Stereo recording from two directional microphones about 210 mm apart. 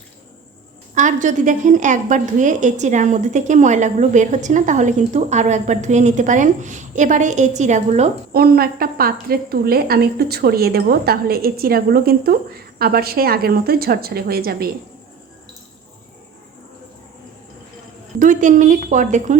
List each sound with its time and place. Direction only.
0.9 s a woman's voice: 35° right (ahead or behind)
8.3 s speech: 45° right (ahead or behind)
18.2 s a woman's voice: 35° right (ahead or behind)